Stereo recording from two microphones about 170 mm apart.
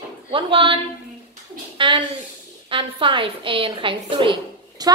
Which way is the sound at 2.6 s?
30° right (ahead or behind).